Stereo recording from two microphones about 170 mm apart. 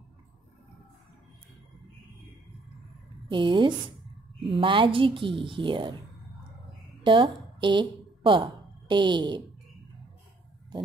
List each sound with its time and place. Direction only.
3.3 s a woman's voice: 30° right (ahead or behind)
7.0 s speech: 30° right (ahead or behind)